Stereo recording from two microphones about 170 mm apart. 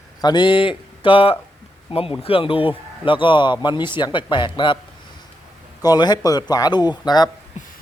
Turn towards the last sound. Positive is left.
turn(degrees=25)  # may be behind; listen again after turning